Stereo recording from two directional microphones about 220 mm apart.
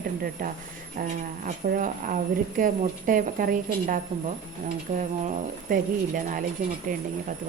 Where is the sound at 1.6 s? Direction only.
40° right (ahead or behind).